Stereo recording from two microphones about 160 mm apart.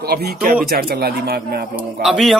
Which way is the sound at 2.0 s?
Centre (ahead or behind).